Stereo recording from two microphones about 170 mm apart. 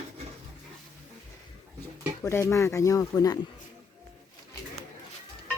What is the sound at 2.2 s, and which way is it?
Speech, 15° left (ahead or behind).